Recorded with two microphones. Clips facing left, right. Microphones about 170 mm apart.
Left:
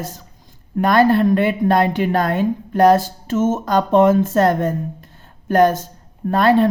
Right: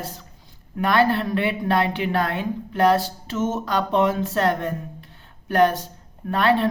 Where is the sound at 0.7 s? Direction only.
45° left (ahead or behind).